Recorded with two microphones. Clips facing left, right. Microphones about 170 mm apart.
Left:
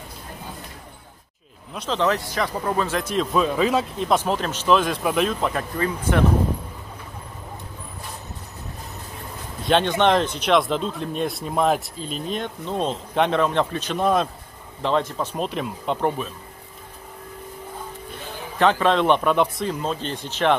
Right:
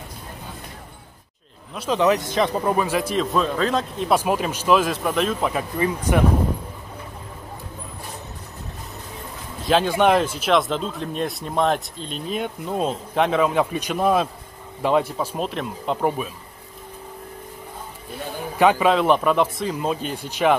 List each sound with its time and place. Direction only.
1.9 s a man's voice: 15° right (ahead or behind)
3.1 s speech: 5° left (ahead or behind)
4.1 s a man's voice: 10° right (ahead or behind)
9.7 s a man's voice: 5° right (ahead or behind)
18.6 s a man's voice: 10° right (ahead or behind)